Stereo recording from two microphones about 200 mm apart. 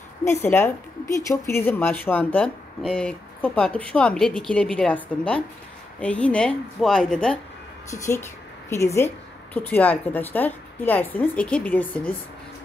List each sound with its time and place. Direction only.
0.2 s a woman's voice: 15° left (ahead or behind)
7.9 s a woman's voice: 15° left (ahead or behind)